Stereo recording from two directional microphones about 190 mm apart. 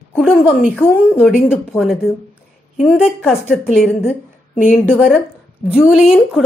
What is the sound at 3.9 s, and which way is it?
Speech, 10° left (ahead or behind).